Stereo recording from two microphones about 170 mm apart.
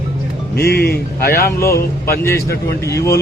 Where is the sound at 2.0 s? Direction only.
15° left (ahead or behind).